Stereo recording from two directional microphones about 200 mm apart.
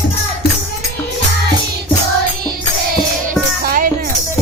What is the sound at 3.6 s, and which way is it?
Music, 45° right (ahead or behind).